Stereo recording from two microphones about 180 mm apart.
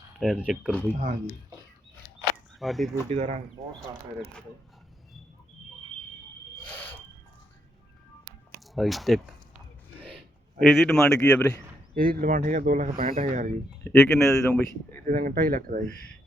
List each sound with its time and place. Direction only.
0.2 s speech: 5° right (ahead or behind)
2.6 s speech: centre (ahead or behind)
3.1 s speech: 40° right (ahead or behind)
6.7 s smoke detector: 10° left (ahead or behind)
8.7 s speech: centre (ahead or behind)
10.6 s speech: centre (ahead or behind)
11.9 s speech: 55° right (ahead or behind)
13.8 s speech: 5° left (ahead or behind)
15.0 s speech: 50° right (ahead or behind)